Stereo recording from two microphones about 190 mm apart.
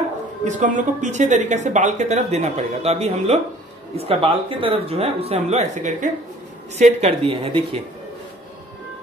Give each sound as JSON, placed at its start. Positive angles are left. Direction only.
{"t": 0.5, "sound": "speech", "side_deg": -40}